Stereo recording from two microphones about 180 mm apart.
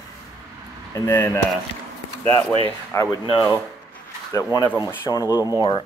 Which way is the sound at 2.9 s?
15° left (ahead or behind).